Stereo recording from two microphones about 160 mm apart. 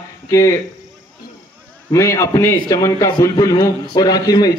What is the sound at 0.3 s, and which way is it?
Speech, 20° left (ahead or behind).